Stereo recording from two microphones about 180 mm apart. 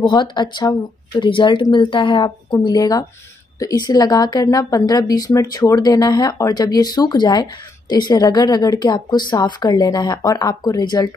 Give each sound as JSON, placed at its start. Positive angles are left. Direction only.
{"t": 0.0, "sound": "a woman's voice", "side_deg": 25}